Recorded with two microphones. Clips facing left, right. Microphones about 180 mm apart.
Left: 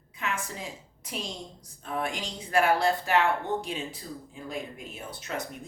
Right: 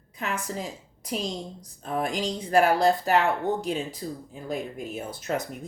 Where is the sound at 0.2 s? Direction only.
40° right (ahead or behind).